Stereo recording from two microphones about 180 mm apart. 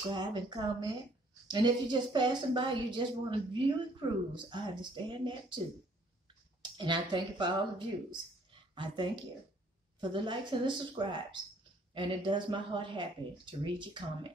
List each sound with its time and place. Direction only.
0.1 s speech: 25° right (ahead or behind)
6.6 s speech: 25° right (ahead or behind)